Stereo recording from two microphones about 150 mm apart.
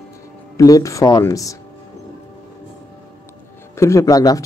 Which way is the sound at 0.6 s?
20° left (ahead or behind).